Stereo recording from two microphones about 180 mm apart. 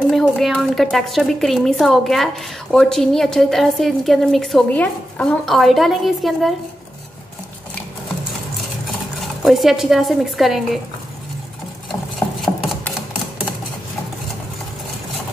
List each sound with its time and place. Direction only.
0.1 s a woman's voice: centre (ahead or behind)
9.4 s a woman's voice: centre (ahead or behind)